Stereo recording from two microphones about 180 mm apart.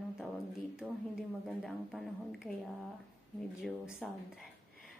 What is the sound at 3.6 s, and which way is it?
Speech, 5° right (ahead or behind).